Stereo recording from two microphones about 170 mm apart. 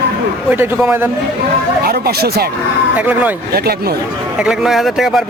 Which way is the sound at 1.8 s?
65° right (ahead or behind).